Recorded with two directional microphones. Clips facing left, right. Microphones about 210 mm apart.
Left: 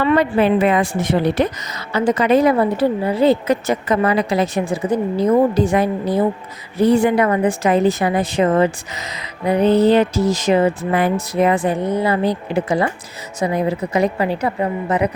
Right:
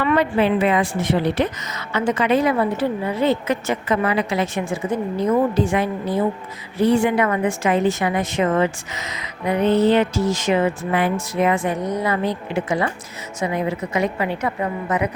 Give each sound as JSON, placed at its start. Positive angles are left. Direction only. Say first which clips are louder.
{"t": 0.0, "sound": "a woman's voice", "louder": "left 3 dB", "side_deg": 35}
{"t": 0.3, "sound": "a woman's voice", "louder": "left 3 dB", "side_deg": 45}